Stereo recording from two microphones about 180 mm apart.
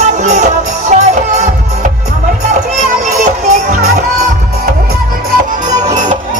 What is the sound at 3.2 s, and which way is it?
Music, 45° right (ahead or behind).